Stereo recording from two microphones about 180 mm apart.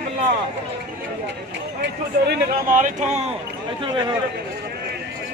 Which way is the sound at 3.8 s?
25° right (ahead or behind).